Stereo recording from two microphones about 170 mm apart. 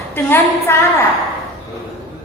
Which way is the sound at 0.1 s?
15° left (ahead or behind).